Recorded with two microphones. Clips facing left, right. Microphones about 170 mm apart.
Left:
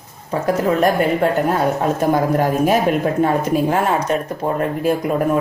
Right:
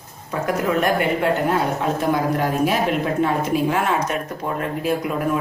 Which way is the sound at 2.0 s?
45° left (ahead or behind).